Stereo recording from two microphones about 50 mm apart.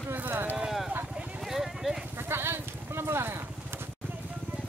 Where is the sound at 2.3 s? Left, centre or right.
Right.